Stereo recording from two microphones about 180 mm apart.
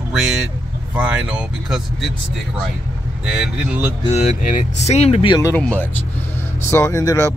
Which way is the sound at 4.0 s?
35° left (ahead or behind).